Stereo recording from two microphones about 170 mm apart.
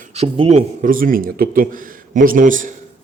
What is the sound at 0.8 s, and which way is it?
Speech, 55° right (ahead or behind).